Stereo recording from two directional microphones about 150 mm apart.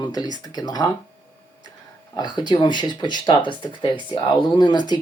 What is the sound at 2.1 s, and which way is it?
Speech, 30° left (ahead or behind).